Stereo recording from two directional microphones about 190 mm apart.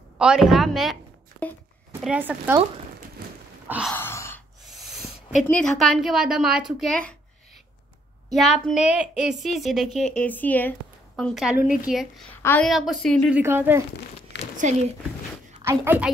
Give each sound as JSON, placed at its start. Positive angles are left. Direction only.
{"t": 0.2, "sound": "a woman's voice", "side_deg": -5}
{"t": 1.4, "sound": "a sound", "side_deg": 5}
{"t": 1.9, "sound": "speech", "side_deg": -10}
{"t": 3.6, "sound": "gasp", "side_deg": -10}
{"t": 3.9, "sound": "gasp", "side_deg": 15}
{"t": 4.6, "sound": "a woman's voice", "side_deg": 0}
{"t": 8.3, "sound": "a woman's voice", "side_deg": 0}
{"t": 12.4, "sound": "a woman's voice", "side_deg": 10}
{"t": 12.6, "sound": "a woman's voice", "side_deg": 0}
{"t": 13.3, "sound": "speech", "side_deg": -10}
{"t": 14.6, "sound": "speech", "side_deg": -40}
{"t": 15.6, "sound": "speech", "side_deg": -15}